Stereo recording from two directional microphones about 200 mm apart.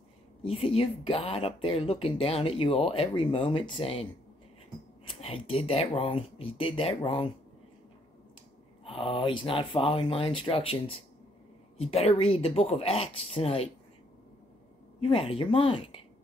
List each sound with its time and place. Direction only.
0.4 s speech: 30° left (ahead or behind)
5.2 s speech: 30° left (ahead or behind)
8.8 s speech: 25° left (ahead or behind)
15.0 s speech: 30° left (ahead or behind)